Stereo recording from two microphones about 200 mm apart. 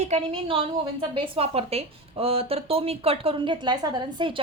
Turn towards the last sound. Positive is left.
turn(degrees=-25)  # may be behind; listen again after turning